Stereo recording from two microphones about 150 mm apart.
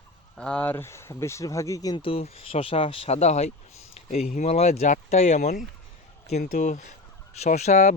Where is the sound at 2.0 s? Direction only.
40° left (ahead or behind).